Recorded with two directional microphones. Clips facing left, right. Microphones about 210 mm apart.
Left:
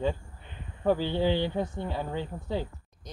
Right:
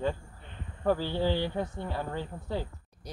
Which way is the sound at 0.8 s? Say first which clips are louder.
Left 2 dB; 20° left (ahead or behind).